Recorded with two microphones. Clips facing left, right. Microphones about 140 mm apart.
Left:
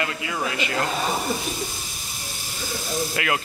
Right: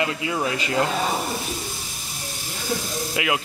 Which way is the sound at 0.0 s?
25° right (ahead or behind).